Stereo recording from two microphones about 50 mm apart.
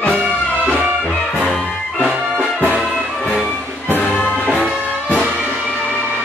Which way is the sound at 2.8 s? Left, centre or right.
Centre.